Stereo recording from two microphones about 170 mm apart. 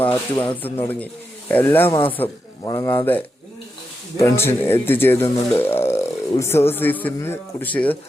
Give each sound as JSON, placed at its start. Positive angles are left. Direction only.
{"t": 0.4, "sound": "speech", "side_deg": 10}
{"t": 1.9, "sound": "a man's voice", "side_deg": 30}
{"t": 2.6, "sound": "speech", "side_deg": 20}